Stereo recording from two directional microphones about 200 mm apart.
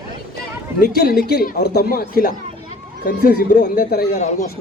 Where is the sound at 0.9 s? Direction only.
50° left (ahead or behind).